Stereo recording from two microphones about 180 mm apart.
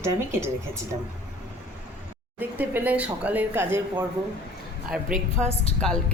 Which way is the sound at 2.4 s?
10° right (ahead or behind).